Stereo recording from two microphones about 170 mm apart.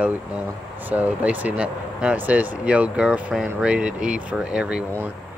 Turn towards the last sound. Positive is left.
turn(degrees=-10)  # may be behind; listen again after turning